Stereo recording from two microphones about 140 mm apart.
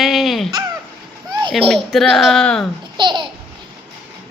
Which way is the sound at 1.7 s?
Centre (ahead or behind).